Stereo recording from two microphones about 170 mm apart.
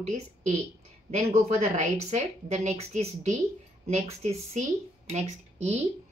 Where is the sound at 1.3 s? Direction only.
40° right (ahead or behind).